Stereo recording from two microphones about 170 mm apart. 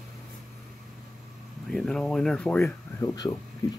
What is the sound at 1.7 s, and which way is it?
Speech, 5° left (ahead or behind).